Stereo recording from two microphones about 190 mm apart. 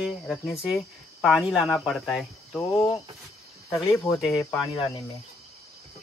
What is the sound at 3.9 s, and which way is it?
Speech, centre (ahead or behind).